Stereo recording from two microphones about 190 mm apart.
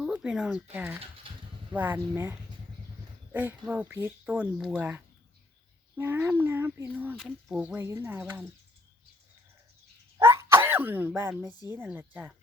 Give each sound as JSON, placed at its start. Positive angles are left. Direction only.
{"t": 0.0, "sound": "speech", "side_deg": -5}
{"t": 1.2, "sound": "a sound", "side_deg": -30}
{"t": 1.7, "sound": "speech", "side_deg": -10}
{"t": 7.2, "sound": "speech", "side_deg": 0}
{"t": 10.2, "sound": "cough", "side_deg": -15}
{"t": 11.2, "sound": "speech", "side_deg": -10}